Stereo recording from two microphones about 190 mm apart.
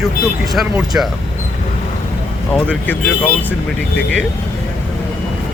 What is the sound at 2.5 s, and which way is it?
Speech, 10° left (ahead or behind).